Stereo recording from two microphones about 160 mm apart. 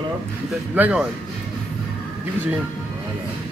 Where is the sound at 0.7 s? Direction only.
10° right (ahead or behind).